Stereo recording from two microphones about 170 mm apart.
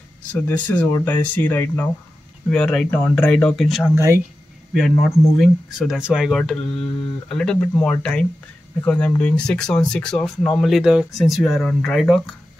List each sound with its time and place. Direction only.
0.3 s speech: 10° left (ahead or behind)
3.9 s speech: 15° right (ahead or behind)
5.4 s speech: 5° right (ahead or behind)